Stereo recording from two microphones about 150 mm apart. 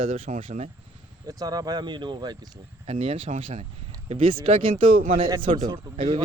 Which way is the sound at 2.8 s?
40° right (ahead or behind).